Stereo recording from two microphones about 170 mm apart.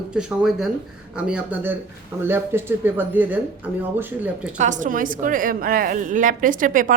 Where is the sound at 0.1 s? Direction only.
5° right (ahead or behind).